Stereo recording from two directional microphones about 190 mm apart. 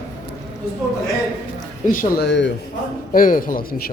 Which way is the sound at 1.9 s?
45° left (ahead or behind).